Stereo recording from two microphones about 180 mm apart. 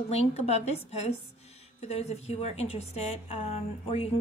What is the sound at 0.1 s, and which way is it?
A woman's voice, 35° left (ahead or behind).